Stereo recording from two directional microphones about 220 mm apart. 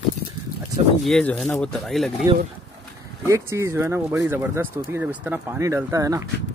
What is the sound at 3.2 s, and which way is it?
Speech, 15° right (ahead or behind).